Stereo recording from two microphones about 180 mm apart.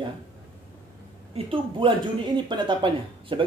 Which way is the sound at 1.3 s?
30° right (ahead or behind).